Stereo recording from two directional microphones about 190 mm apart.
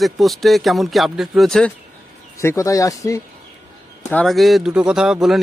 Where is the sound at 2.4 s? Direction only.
15° left (ahead or behind).